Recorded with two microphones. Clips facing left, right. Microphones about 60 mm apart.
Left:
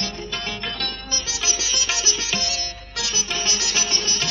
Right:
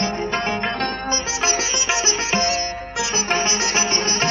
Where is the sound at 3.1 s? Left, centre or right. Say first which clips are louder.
Right 7 dB; right.